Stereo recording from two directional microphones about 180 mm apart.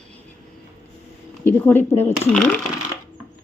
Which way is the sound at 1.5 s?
10° left (ahead or behind).